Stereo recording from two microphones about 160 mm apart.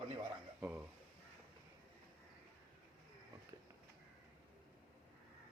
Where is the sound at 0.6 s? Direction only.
10° right (ahead or behind).